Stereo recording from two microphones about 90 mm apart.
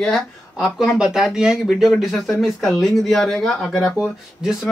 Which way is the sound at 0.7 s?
5° right (ahead or behind).